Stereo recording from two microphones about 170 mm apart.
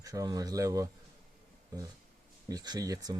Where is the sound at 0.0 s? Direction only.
20° right (ahead or behind).